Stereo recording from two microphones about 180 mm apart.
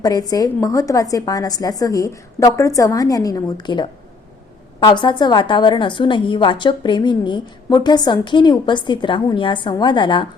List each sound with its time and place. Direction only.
0.0 s a woman's voice: 20° left (ahead or behind)